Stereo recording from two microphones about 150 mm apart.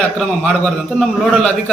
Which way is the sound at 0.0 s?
5° left (ahead or behind).